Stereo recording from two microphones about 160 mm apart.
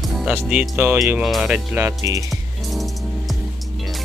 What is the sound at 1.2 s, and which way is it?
Speech, 5° right (ahead or behind).